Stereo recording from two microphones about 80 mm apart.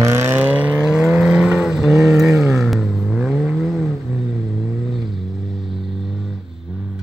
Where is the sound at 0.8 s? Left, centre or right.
Centre.